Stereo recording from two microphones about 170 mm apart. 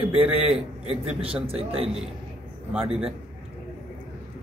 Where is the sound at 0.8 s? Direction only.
35° right (ahead or behind).